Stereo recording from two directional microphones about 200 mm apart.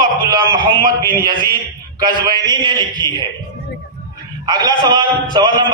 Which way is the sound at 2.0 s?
20° right (ahead or behind).